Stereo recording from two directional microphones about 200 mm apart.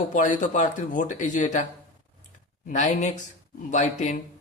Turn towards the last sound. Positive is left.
turn(degrees=40)  # may be behind; listen again after turning